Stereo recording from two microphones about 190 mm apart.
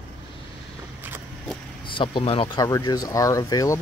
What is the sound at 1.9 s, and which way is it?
Speech, 25° left (ahead or behind).